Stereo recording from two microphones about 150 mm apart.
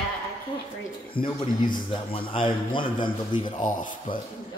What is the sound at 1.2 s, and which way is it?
Speech, 80° left.